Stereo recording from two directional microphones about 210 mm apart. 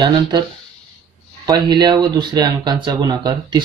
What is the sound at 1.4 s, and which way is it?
Speech, 20° right (ahead or behind).